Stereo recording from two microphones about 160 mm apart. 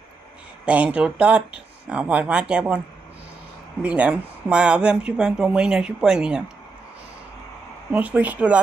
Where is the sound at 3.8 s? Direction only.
10° right (ahead or behind).